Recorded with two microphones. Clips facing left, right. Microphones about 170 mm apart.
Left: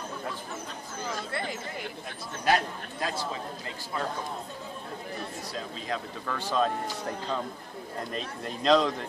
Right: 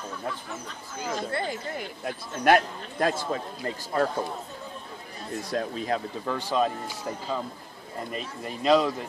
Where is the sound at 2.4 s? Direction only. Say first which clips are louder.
Right 5 dB; 55° right (ahead or behind).